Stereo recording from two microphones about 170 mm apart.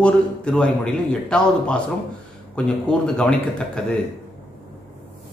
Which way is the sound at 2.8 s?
5° left (ahead or behind).